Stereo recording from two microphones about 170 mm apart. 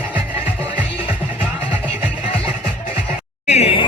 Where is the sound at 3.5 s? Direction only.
40° left (ahead or behind).